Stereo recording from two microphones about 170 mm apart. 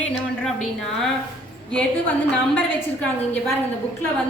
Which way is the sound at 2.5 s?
10° left (ahead or behind).